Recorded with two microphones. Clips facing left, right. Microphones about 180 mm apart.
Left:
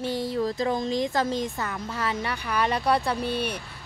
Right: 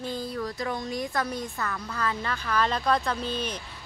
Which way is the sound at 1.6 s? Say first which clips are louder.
Left 1 dB; 20° left (ahead or behind).